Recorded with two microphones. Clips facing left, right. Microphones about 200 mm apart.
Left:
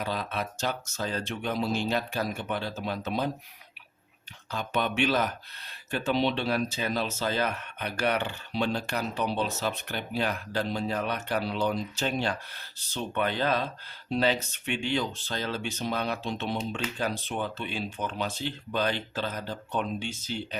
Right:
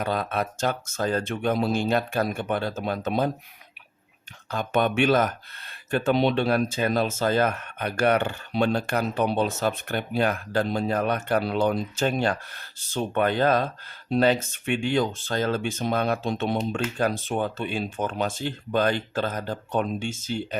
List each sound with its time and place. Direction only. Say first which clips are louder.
0.0 s speech: right 5 dB; 55° right (ahead or behind)
4.5 s speech: right 6 dB; 50° right (ahead or behind)